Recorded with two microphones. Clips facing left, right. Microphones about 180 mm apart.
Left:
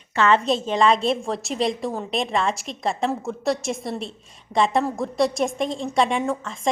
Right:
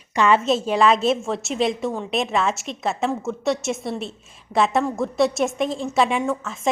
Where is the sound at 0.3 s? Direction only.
5° right (ahead or behind).